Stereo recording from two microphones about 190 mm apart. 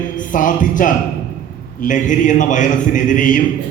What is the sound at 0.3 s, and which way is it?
A man's voice, 45° left (ahead or behind).